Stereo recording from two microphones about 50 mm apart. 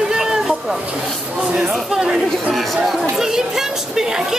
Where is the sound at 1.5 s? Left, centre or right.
Centre.